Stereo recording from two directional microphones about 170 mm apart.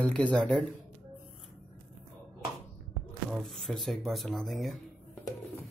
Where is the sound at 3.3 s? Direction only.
Centre (ahead or behind).